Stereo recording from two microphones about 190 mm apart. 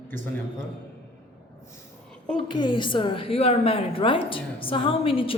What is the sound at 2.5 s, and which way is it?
A woman's voice, 25° left (ahead or behind).